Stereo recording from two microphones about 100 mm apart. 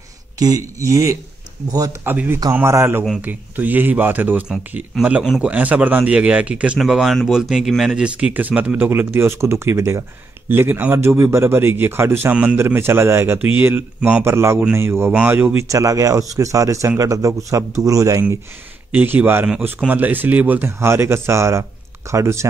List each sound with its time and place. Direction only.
0.4 s speech: 35° right (ahead or behind)
2.1 s speech: 20° right (ahead or behind)
15.7 s speech: 35° right (ahead or behind)
18.9 s speech: 15° right (ahead or behind)